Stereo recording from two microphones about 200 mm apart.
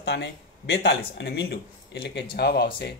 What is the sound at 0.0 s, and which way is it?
Speech, 55° left (ahead or behind).